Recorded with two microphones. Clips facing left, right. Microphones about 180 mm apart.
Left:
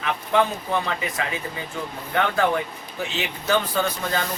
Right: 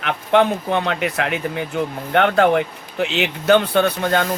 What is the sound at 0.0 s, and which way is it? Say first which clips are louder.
Speech: right 5 dB; 70° right (ahead or behind).